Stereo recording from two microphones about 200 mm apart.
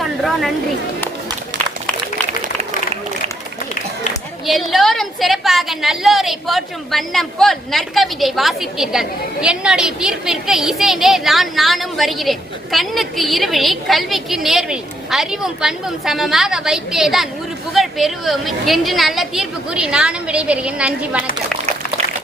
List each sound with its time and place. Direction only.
0.0 s chatter: centre (ahead or behind)
2.4 s run: 30° right (ahead or behind)
4.4 s a woman's voice: centre (ahead or behind)